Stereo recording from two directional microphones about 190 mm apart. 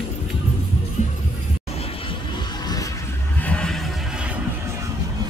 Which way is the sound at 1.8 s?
30° left (ahead or behind).